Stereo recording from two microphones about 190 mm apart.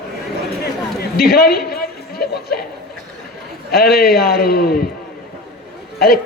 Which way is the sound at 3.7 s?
55° left (ahead or behind).